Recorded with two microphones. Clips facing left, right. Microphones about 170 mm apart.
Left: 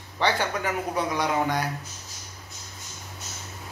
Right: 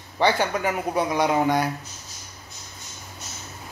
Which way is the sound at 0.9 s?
10° right (ahead or behind).